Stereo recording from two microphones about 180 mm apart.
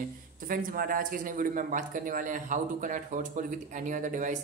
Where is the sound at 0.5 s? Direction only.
50° right (ahead or behind).